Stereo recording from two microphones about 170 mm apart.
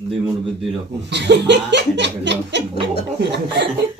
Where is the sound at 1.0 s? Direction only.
90° right.